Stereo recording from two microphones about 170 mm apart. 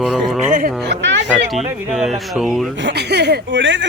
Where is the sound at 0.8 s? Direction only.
90° right.